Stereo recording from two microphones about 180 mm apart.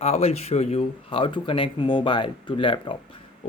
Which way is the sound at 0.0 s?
35° left (ahead or behind).